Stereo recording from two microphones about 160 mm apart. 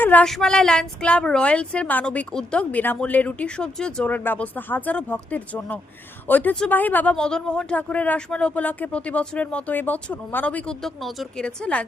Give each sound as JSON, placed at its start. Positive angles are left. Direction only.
{"t": 0.0, "sound": "speech", "side_deg": 10}